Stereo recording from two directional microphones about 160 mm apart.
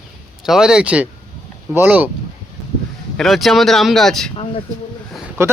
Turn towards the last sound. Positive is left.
turn(degrees=-15)  # may be behind; listen again after turning